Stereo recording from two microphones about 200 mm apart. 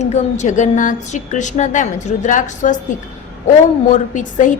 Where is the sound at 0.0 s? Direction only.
35° left (ahead or behind).